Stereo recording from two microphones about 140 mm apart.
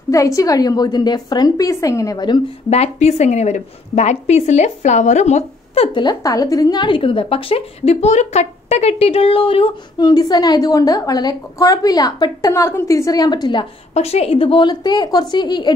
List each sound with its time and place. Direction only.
0.1 s a woman's voice: 25° left (ahead or behind)
2.7 s a woman's voice: 50° left (ahead or behind)
5.9 s a woman's voice: 25° left (ahead or behind)
9.9 s a woman's voice: 30° left (ahead or behind)
13.9 s a woman's voice: 45° left (ahead or behind)